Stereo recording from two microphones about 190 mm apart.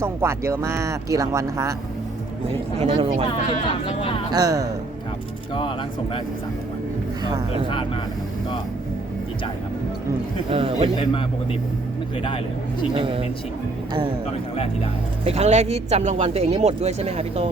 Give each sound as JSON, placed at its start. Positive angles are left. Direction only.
{"t": 0.0, "sound": "speech", "side_deg": -15}
{"t": 2.5, "sound": "speech", "side_deg": -30}
{"t": 3.8, "sound": "speech", "side_deg": 30}
{"t": 4.3, "sound": "speech", "side_deg": -20}
{"t": 10.5, "sound": "speech", "side_deg": -30}
{"t": 12.9, "sound": "speech", "side_deg": -25}
{"t": 15.2, "sound": "speech", "side_deg": -35}